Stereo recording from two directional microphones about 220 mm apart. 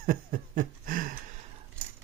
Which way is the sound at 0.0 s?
40° right (ahead or behind).